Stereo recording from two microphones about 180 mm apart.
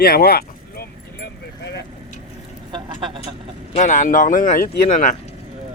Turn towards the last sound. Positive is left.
turn(degrees=45)  # may be behind; listen again after turning